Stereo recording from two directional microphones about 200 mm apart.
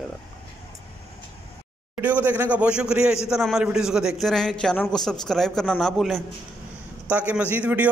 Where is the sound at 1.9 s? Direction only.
10° right (ahead or behind).